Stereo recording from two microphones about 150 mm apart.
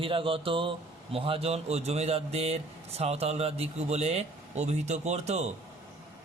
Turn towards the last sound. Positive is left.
turn(degrees=-45)  # may be behind; listen again after turning